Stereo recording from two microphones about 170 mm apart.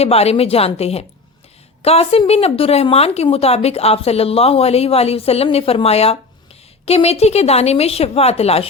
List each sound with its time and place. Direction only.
0.0 s speech: 35° left (ahead or behind)